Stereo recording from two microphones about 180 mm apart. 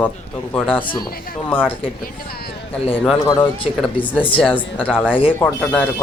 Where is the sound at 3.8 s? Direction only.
10° left (ahead or behind).